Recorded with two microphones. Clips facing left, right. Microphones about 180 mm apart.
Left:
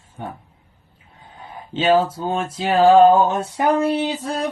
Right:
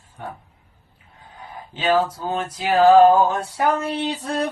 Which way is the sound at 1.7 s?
25° left (ahead or behind).